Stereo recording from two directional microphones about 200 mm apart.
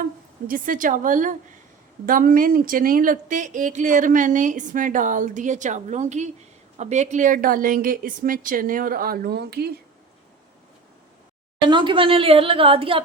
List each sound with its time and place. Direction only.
0.0 s a woman's voice: 45° right (ahead or behind)
11.7 s speech: 25° right (ahead or behind)